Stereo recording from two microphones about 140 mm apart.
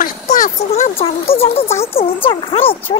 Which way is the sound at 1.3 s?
45° left (ahead or behind).